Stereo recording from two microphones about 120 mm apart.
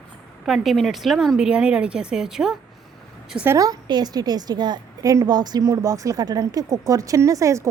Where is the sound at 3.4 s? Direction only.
30° right (ahead or behind).